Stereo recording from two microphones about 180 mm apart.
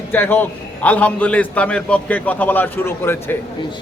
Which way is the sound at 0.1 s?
10° left (ahead or behind).